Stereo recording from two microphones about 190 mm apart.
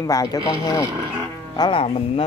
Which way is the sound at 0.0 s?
20° left (ahead or behind).